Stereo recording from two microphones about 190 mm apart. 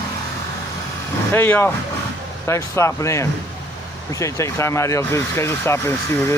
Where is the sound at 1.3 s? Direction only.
10° left (ahead or behind).